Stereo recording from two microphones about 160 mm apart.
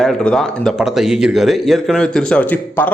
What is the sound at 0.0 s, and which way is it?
Speech, 5° left (ahead or behind).